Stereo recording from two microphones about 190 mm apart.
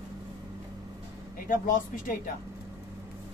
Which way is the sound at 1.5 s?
45° left (ahead or behind).